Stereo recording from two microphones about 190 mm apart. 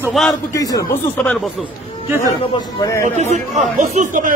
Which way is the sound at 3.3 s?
35° right (ahead or behind).